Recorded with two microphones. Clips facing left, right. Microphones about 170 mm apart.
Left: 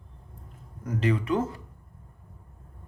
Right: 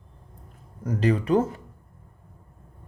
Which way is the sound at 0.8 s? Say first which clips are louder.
Right 3 dB; 35° right (ahead or behind).